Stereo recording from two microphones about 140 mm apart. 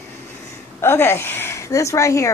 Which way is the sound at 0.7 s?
15° left (ahead or behind).